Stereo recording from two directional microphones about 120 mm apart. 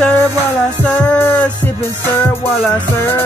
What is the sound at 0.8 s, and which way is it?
Music, 10° left (ahead or behind).